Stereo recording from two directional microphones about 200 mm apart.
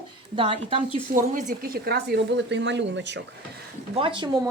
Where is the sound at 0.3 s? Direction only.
25° right (ahead or behind).